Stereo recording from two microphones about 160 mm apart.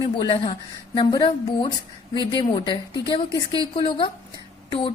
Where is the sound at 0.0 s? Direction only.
25° left (ahead or behind).